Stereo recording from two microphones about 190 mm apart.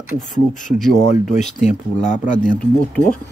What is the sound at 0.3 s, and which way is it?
Speech, 40° left (ahead or behind).